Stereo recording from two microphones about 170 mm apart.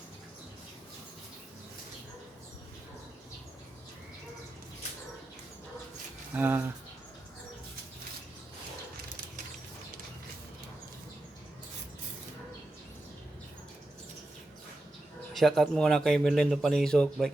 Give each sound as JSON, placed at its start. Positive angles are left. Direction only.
{"t": 6.3, "sound": "speech", "side_deg": -10}
{"t": 15.3, "sound": "speech", "side_deg": 0}